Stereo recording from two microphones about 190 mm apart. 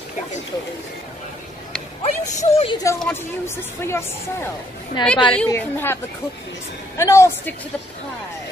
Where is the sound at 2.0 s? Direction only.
35° left (ahead or behind).